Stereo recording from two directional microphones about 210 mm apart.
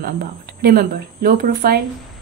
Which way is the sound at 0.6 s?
45° right (ahead or behind).